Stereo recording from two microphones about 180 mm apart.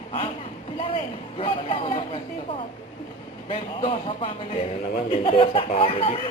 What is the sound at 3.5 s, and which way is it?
Speech, 30° left (ahead or behind).